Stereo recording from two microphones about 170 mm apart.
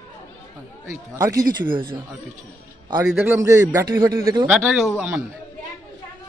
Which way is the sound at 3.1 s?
15° right (ahead or behind).